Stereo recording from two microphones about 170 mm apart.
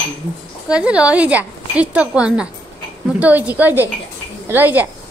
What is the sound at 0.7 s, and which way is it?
A woman's voice, 5° right (ahead or behind).